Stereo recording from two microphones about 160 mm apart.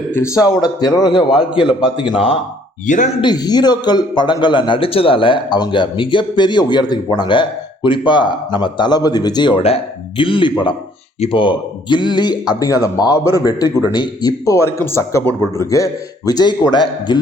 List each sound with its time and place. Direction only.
0.1 s speech: 15° left (ahead or behind); by 2.4 s 35° left (ahead or behind)
2.8 s speech: 50° left (ahead or behind)
3.2 s speech: 25° left (ahead or behind)